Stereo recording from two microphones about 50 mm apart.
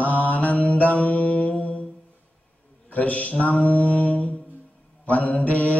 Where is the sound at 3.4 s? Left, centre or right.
Left.